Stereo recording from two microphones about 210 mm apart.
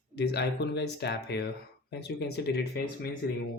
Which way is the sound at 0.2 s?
50° left (ahead or behind).